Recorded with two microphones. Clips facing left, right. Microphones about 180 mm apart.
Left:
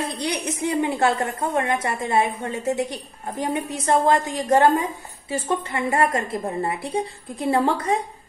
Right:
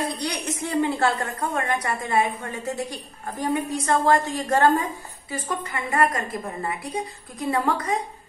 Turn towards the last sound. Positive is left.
turn(degrees=30)  # may be behind; listen again after turning